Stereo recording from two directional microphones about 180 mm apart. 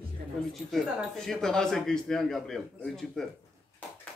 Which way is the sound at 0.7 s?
Centre (ahead or behind).